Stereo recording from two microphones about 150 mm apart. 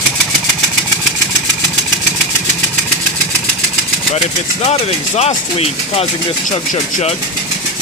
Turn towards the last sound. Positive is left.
turn(degrees=45)  # may be behind; listen again after turning